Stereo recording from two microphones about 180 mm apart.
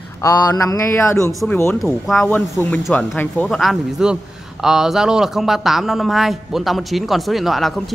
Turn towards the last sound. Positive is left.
turn(degrees=0)  # may be behind; listen again after turning